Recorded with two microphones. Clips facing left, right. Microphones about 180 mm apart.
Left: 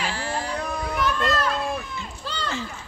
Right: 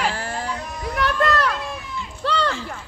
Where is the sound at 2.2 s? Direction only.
75° right (ahead or behind).